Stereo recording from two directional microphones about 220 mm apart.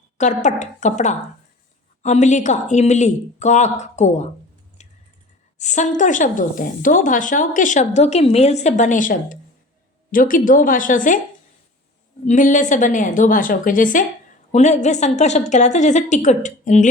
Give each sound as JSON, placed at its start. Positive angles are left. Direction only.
{"t": 0.2, "sound": "a woman's voice", "side_deg": 35}
{"t": 4.8, "sound": "typing", "side_deg": 30}
{"t": 5.5, "sound": "a woman's voice", "side_deg": 35}
{"t": 12.2, "sound": "a woman's voice", "side_deg": 35}